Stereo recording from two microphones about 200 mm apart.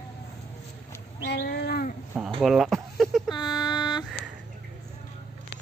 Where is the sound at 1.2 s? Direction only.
55° left (ahead or behind).